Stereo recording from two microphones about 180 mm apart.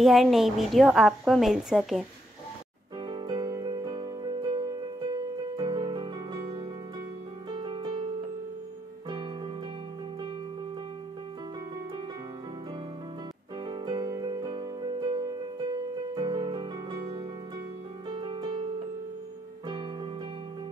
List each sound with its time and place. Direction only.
0.0 s a woman's voice: centre (ahead or behind)
3.1 s music: 25° right (ahead or behind)
13.7 s music: 25° right (ahead or behind)